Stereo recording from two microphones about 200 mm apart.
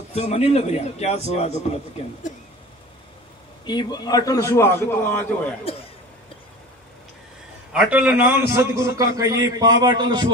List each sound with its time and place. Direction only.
0.1 s a man's voice: 35° left (ahead or behind)
3.6 s a man's voice: 20° left (ahead or behind)
7.7 s a man's voice: 5° right (ahead or behind); by 10.2 s 25° right (ahead or behind)